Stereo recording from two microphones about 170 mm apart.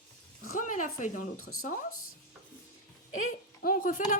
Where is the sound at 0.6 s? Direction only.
50° left (ahead or behind).